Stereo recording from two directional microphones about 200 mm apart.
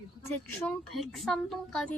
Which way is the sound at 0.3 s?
5° left (ahead or behind).